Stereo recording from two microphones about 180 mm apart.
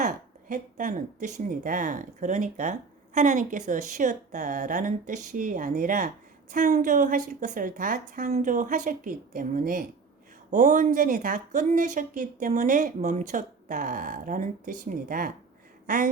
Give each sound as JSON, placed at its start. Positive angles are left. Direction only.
{"t": 0.0, "sound": "a woman's voice", "side_deg": -45}